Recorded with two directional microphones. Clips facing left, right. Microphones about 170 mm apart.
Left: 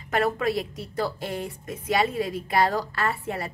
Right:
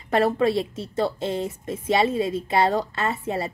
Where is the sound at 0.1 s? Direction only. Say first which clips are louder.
Right 4 dB; 30° right (ahead or behind).